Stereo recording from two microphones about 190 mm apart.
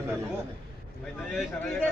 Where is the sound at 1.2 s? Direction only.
Centre (ahead or behind).